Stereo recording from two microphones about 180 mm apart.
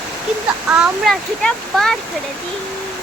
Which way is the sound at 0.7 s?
Centre (ahead or behind).